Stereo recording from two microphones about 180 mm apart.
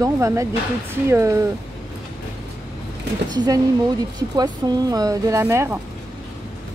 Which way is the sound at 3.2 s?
25° right (ahead or behind).